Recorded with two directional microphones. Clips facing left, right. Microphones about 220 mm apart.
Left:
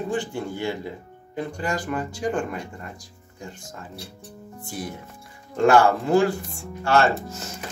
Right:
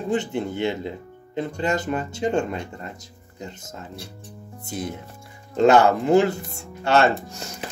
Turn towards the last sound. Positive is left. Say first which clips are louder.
# right 1 dB
turn(degrees=-20)  # may be behind; listen again after turning